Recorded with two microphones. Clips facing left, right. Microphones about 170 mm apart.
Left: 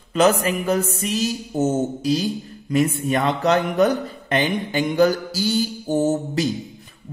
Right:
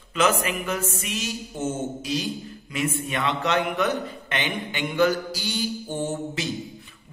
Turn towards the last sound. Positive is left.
turn(degrees=40)  # may be behind; listen again after turning